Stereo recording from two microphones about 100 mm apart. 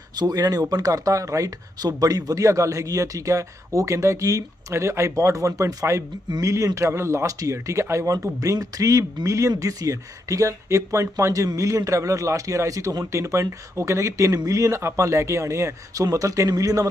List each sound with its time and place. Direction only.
0.1 s speech: 40° right (ahead or behind)